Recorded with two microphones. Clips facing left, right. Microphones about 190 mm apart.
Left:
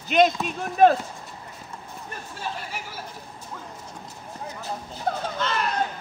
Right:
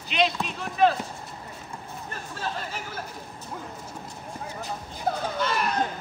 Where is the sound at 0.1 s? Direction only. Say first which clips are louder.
Left 6 dB; 45° left (ahead or behind).